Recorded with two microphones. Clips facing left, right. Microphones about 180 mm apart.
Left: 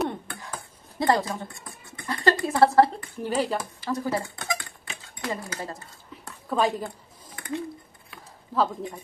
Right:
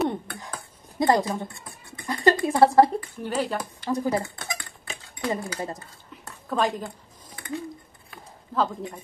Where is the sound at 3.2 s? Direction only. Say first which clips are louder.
Left 3 dB; 10° left (ahead or behind).